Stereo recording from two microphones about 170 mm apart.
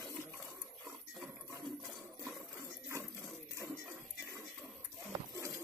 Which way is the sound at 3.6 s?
15° right (ahead or behind).